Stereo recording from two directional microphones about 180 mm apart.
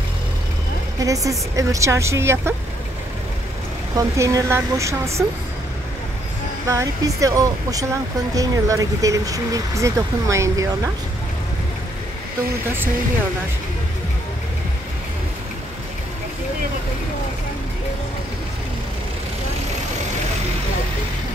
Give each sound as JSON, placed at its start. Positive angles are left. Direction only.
{"t": 0.9, "sound": "a woman's voice", "side_deg": -20}
{"t": 3.9, "sound": "speech", "side_deg": -20}
{"t": 6.7, "sound": "speech", "side_deg": -20}